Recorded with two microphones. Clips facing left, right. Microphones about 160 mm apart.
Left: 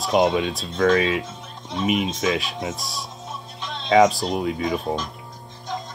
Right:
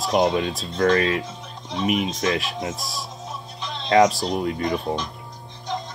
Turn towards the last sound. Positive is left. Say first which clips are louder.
# even
turn(degrees=0)  # may be behind; listen again after turning